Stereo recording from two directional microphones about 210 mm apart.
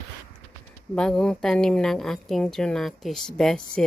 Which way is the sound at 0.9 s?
5° left (ahead or behind).